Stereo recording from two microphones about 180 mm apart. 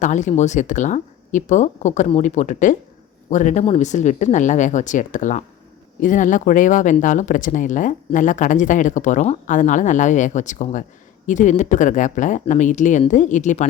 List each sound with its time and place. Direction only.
0.0 s speech: 40° left (ahead or behind)